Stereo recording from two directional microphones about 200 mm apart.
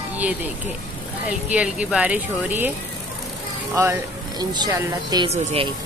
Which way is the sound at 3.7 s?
15° right (ahead or behind).